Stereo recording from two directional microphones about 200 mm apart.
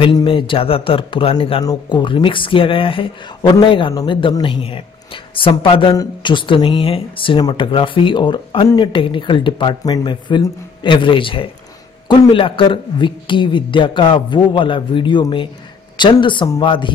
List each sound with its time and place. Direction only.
0.0 s a woman's voice: 25° left (ahead or behind)